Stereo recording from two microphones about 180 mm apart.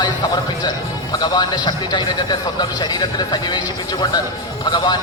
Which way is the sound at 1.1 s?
25° left (ahead or behind).